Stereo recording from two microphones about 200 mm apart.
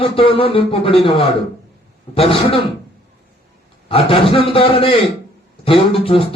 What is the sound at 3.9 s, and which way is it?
Speech, 30° left (ahead or behind).